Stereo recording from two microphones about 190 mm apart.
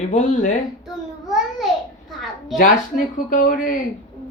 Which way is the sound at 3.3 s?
45° left (ahead or behind).